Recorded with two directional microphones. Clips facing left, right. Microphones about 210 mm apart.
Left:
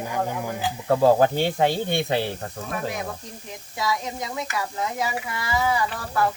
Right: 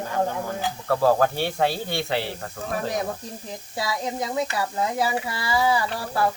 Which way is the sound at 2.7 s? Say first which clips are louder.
Right 3 dB; 35° right (ahead or behind).